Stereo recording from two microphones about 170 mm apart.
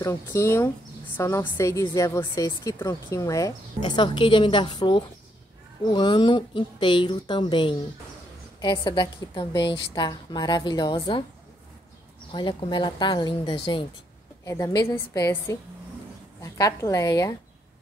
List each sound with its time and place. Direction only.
0.0 s a woman's voice: 15° left (ahead or behind)
12.3 s a woman's voice: 30° left (ahead or behind)